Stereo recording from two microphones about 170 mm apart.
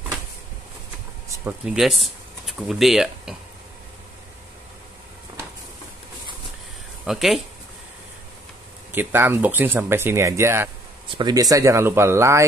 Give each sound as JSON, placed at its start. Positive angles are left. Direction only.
{"t": 1.4, "sound": "speech", "side_deg": -5}
{"t": 7.1, "sound": "speech", "side_deg": 0}
{"t": 8.9, "sound": "speech", "side_deg": -15}